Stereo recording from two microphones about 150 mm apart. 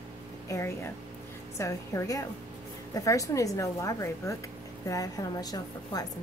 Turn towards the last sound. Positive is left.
turn(degrees=25)  # may be behind; listen again after turning